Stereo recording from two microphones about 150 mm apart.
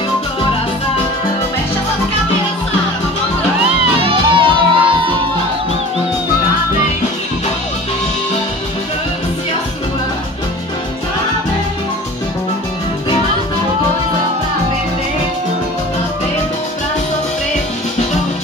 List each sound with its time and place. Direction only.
4.0 s music: 35° right (ahead or behind)